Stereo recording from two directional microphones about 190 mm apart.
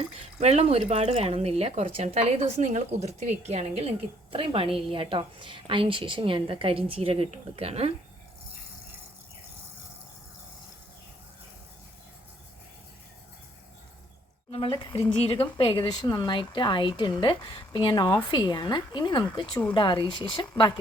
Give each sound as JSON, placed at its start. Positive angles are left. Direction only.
{"t": 0.3, "sound": "a woman's voice", "side_deg": -35}
{"t": 14.5, "sound": "speech", "side_deg": 25}